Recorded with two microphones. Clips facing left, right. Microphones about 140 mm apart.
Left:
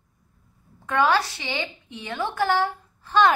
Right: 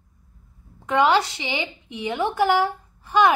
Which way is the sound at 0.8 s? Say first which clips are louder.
Right 3 dB; 20° right (ahead or behind).